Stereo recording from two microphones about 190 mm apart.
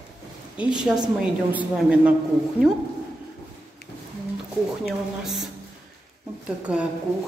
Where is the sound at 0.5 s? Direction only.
5° right (ahead or behind).